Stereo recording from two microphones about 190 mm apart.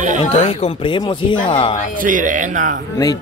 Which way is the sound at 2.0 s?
45° right (ahead or behind).